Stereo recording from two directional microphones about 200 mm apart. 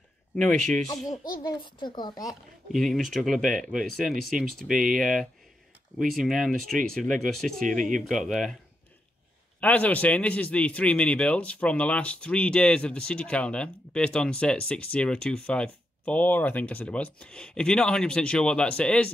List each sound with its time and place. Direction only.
0.4 s a man's voice: 5° left (ahead or behind)
1.4 s a woman's voice: 20° left (ahead or behind)
2.7 s a man's voice: centre (ahead or behind)
9.6 s a man's voice: 5° left (ahead or behind)